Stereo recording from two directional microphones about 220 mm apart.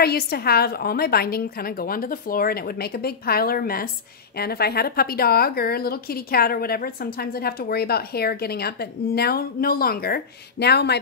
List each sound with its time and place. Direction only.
0.0 s a woman's voice: 45° left (ahead or behind)